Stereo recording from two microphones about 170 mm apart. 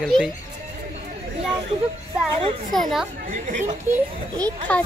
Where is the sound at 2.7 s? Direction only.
Centre (ahead or behind).